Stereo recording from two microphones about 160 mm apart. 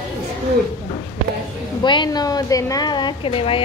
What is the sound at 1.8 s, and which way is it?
A woman's voice, 30° left (ahead or behind).